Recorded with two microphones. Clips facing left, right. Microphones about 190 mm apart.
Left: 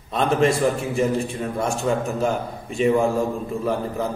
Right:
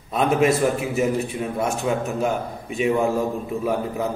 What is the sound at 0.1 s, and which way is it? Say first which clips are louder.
A man's voice: right 1 dB; 5° right (ahead or behind).